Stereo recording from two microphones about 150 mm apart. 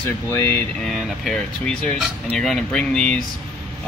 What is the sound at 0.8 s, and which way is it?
Speech, centre (ahead or behind).